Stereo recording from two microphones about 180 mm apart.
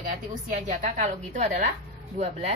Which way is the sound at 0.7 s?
40° right (ahead or behind).